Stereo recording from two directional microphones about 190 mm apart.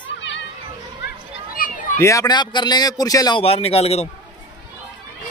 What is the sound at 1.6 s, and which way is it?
Children playing, 50° left (ahead or behind).